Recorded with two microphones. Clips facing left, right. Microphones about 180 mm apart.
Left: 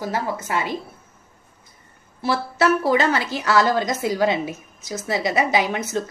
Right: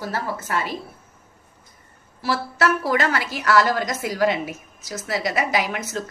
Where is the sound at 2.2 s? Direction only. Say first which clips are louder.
Left 2 dB; 20° left (ahead or behind).